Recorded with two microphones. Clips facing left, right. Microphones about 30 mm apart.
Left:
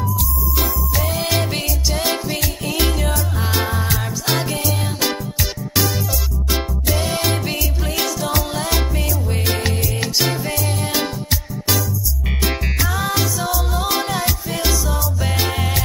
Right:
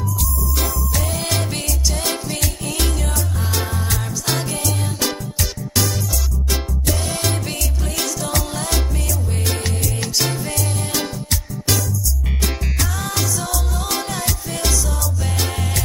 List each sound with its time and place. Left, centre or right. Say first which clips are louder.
0.6 s music: left 2 dB; centre
6.5 s music: left 2 dB; left
12.4 s music: left 4 dB; centre